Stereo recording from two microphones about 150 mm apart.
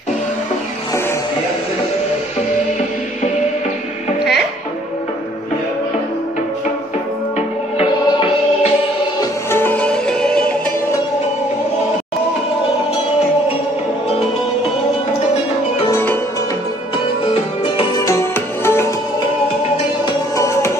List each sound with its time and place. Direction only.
9.2 s music: 15° left (ahead or behind)
15.9 s music: 15° left (ahead or behind)
17.2 s music: 35° left (ahead or behind)
17.9 s music: 20° left (ahead or behind)
20.1 s music: 20° left (ahead or behind)